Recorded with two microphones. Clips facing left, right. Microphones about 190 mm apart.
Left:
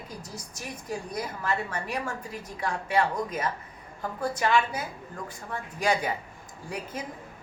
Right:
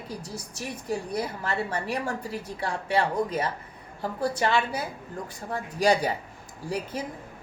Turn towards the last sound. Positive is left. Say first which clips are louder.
# right 4 dB
turn(degrees=-35)  # may be behind; listen again after turning